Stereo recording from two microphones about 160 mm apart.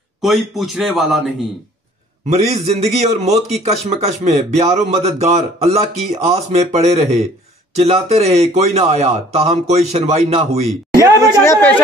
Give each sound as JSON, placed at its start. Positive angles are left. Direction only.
{"t": 0.2, "sound": "a man's voice", "side_deg": 0}
{"t": 2.2, "sound": "a man's voice", "side_deg": -45}
{"t": 11.0, "sound": "speech", "side_deg": 15}